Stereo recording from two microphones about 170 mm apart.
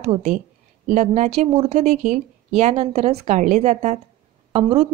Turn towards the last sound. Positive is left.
turn(degrees=-35)  # may be behind; listen again after turning